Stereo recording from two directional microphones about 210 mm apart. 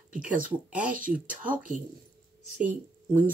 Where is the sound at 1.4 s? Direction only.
40° right (ahead or behind).